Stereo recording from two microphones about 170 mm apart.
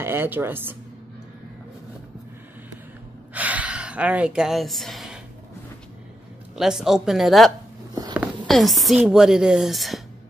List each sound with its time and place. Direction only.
0.0 s a woman's voice: 15° right (ahead or behind)
3.3 s speech: 10° right (ahead or behind)
6.5 s speech: centre (ahead or behind)
7.9 s a sound: 25° right (ahead or behind)
8.5 s speech: centre (ahead or behind)